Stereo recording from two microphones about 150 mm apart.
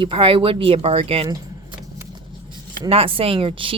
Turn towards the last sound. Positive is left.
turn(degrees=-35)  # may be behind; listen again after turning